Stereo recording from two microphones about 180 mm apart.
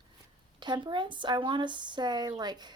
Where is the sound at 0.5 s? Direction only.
25° right (ahead or behind).